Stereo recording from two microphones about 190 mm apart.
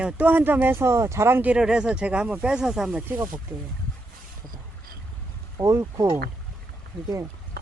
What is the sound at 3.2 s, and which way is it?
Speech, 15° right (ahead or behind).